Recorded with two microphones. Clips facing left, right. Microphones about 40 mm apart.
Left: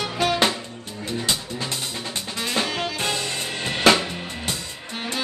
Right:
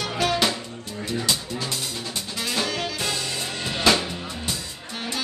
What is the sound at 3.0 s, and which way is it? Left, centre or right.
Music, left.